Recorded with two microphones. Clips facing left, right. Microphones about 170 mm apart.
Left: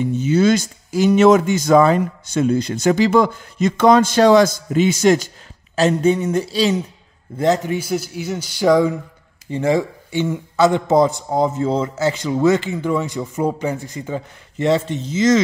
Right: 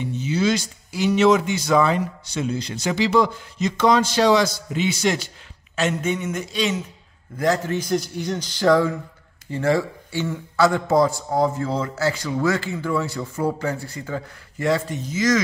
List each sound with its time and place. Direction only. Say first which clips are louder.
0.0 s speech: left 6 dB; 45° left (ahead or behind)
5.8 s a sound: left 7 dB; 35° left (ahead or behind)
7.3 s speech: left 4 dB; 20° left (ahead or behind)
7.7 s speech: left 1 dB; 5° left (ahead or behind); by 15.4 s 25° left (ahead or behind)